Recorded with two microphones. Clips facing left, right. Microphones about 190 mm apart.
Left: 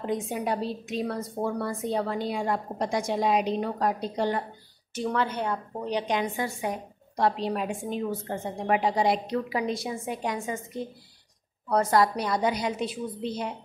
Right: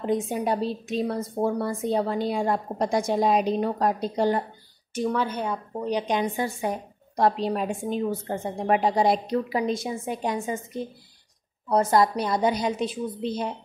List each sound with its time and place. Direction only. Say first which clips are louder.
0.0 s a woman's voice: right 4 dB; 30° right (ahead or behind)
4.9 s a woman's voice: right 2 dB; 10° right (ahead or behind); by 6.7 s 25° right (ahead or behind)
7.2 s a woman's voice: right 3 dB; 40° right (ahead or behind)
11.7 s a woman's voice: right 2 dB; 25° right (ahead or behind)